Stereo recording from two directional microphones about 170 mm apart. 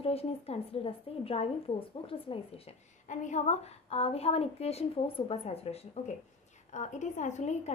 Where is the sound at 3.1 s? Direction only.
45° left (ahead or behind).